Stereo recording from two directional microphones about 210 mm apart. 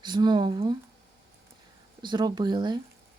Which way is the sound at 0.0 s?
20° right (ahead or behind).